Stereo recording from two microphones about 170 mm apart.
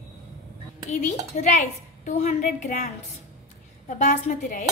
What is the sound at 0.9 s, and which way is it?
A woman's voice, 45° left (ahead or behind).